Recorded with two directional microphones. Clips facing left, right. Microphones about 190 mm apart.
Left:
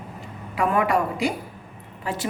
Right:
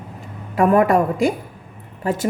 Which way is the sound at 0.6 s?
45° right (ahead or behind).